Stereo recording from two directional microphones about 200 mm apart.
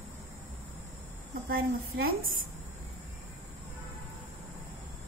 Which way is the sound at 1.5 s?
45° right (ahead or behind).